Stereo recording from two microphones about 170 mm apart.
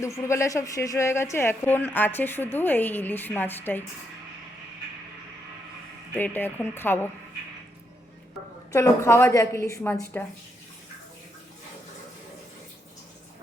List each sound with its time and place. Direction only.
0.0 s speech: 15° left (ahead or behind)
6.1 s speech: 10° left (ahead or behind)
8.7 s speech: 15° left (ahead or behind)